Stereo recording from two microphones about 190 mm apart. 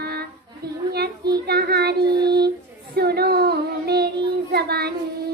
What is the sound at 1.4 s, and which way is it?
Child singing, 55° right (ahead or behind).